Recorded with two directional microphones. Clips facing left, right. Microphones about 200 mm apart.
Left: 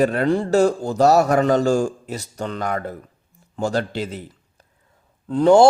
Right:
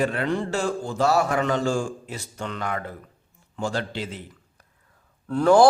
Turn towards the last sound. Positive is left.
turn(degrees=25)  # may be behind; listen again after turning